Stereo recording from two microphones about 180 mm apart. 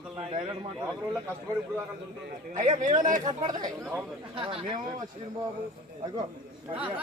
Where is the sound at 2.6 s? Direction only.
40° right (ahead or behind).